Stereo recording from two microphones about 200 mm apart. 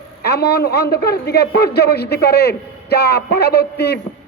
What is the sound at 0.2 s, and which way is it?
A man's voice, 50° left (ahead or behind).